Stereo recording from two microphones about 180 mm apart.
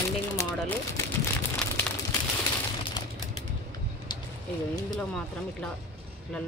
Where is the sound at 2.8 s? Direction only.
30° left (ahead or behind).